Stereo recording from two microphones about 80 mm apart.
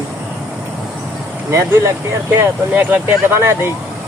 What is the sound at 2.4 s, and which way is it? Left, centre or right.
Speech, right.